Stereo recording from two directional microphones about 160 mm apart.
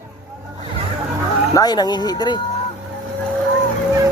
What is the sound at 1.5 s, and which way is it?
Speech, 25° left (ahead or behind).